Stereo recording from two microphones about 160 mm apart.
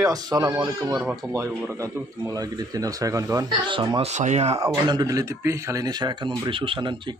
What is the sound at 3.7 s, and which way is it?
Speech, 30° right (ahead or behind).